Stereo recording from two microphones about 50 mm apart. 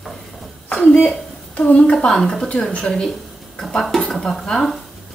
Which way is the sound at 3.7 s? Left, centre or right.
Centre.